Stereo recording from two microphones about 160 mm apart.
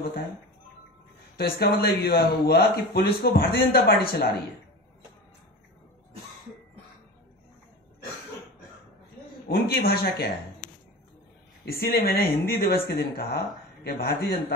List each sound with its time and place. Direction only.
1.3 s speech: 70° left (ahead or behind)
9.5 s speech: 75° left (ahead or behind)
11.6 s speech: 75° left (ahead or behind)
13.8 s speech: 70° left (ahead or behind)